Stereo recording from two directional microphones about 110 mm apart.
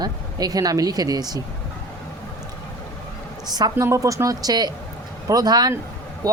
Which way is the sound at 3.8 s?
25° right (ahead or behind).